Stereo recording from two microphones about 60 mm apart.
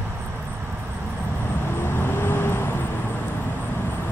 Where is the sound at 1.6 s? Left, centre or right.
Left.